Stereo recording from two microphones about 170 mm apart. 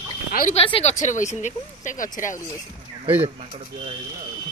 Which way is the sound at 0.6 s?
35° left (ahead or behind).